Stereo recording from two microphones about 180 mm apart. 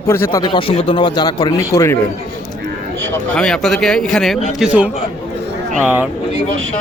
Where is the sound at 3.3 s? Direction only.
5° left (ahead or behind).